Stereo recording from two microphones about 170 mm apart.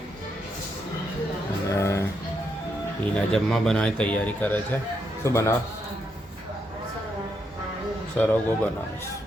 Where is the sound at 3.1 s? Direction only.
5° left (ahead or behind).